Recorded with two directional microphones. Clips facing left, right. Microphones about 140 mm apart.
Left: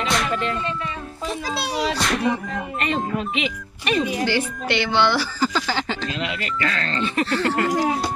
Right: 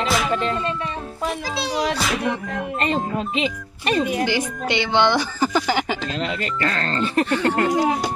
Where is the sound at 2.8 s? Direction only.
35° right (ahead or behind).